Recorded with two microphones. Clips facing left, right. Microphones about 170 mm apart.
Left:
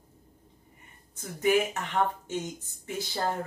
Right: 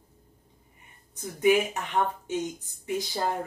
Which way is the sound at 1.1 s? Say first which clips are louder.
Right 3 dB; 15° right (ahead or behind).